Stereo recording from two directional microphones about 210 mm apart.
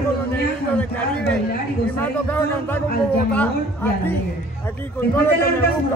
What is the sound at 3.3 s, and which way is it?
Speech, 10° left (ahead or behind).